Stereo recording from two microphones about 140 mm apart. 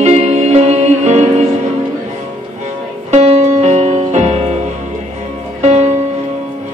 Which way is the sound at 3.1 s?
55° right (ahead or behind).